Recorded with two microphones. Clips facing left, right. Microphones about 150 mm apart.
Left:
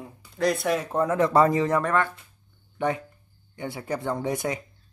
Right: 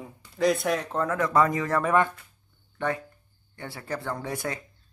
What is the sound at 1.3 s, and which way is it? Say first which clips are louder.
Speech: left 2 dB; 30° left (ahead or behind).